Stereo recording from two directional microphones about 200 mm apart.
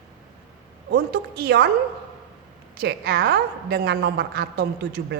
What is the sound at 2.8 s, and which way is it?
A woman's voice, 50° right (ahead or behind).